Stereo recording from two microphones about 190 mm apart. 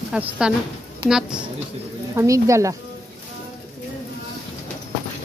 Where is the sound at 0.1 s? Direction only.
5° right (ahead or behind).